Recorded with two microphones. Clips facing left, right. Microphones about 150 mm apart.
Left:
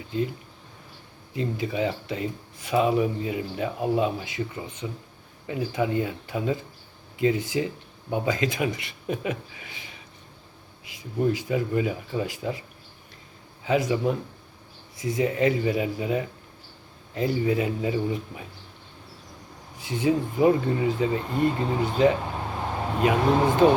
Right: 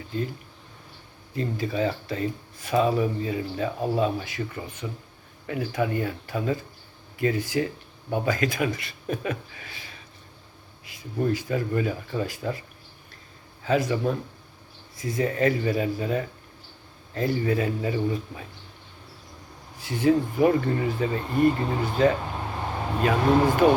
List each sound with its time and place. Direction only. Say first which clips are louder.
1.3 s speech: even; 15° left (ahead or behind)
13.7 s speech: even; 15° left (ahead or behind)
19.7 s speech: right 2 dB; 20° left (ahead or behind)